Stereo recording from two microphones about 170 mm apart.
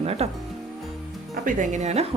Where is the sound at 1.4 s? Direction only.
45° right (ahead or behind).